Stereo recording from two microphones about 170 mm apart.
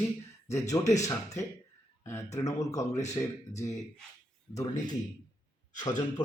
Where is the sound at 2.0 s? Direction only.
15° left (ahead or behind).